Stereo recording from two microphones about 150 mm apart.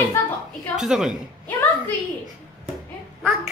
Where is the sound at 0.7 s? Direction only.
5° right (ahead or behind).